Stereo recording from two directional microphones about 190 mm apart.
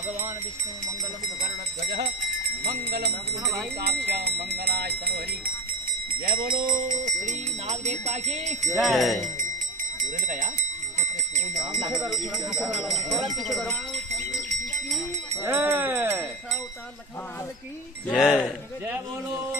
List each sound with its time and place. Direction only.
2.6 s speech: 55° right (ahead or behind)
6.2 s speech: 50° right (ahead or behind)
8.7 s speech: centre (ahead or behind)
10.2 s speech: 45° right (ahead or behind)
12.1 s speech: centre (ahead or behind)
13.4 s goat: centre (ahead or behind)
15.3 s speech: 10° right (ahead or behind)
18.0 s speech: centre (ahead or behind)